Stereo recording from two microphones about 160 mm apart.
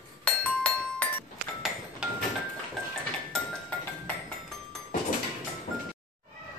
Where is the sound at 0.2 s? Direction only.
10° left (ahead or behind).